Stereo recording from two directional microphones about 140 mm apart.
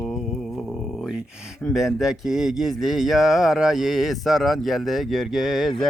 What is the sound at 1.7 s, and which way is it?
Speech, centre (ahead or behind).